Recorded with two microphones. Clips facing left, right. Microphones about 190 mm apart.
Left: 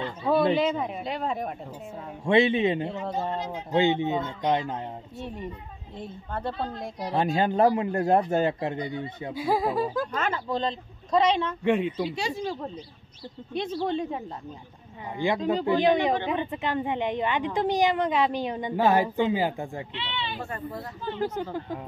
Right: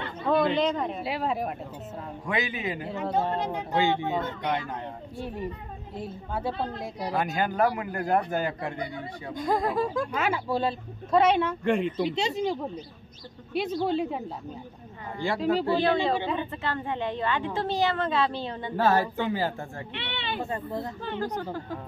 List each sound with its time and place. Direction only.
0.3 s chatter: 10° left (ahead or behind)
0.6 s a woman's voice: 5° left (ahead or behind)
2.2 s speech: 25° left (ahead or behind)
3.3 s speech: 60° right (ahead or behind)
3.7 s a child's voice: 20° left (ahead or behind)
5.2 s a woman's voice: 5° right (ahead or behind)
7.1 s speech: 25° left (ahead or behind)
9.3 s a woman's voice: 5° left (ahead or behind)
10.1 s speech: 10° right (ahead or behind)
11.6 s speech: 5° left (ahead or behind)
12.0 s speech: 20° right (ahead or behind); by 14.2 s 5° right (ahead or behind)
15.1 s speech: 15° left (ahead or behind)
19.9 s speech: 60° right (ahead or behind)
20.4 s speech: 20° right (ahead or behind)